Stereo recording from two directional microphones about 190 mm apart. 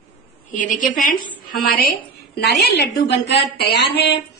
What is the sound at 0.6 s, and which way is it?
A woman's voice, 45° left (ahead or behind).